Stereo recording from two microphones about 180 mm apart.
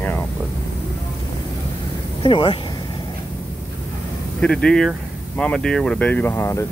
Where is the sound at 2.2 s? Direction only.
25° left (ahead or behind).